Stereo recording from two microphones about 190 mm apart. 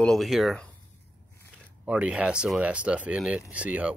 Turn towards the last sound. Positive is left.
turn(degrees=-5)  # may be behind; listen again after turning